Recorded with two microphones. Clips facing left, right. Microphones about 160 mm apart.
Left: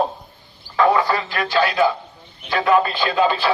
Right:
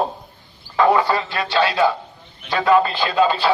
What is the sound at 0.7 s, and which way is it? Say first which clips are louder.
A man's voice: right 1 dB; 25° right (ahead or behind).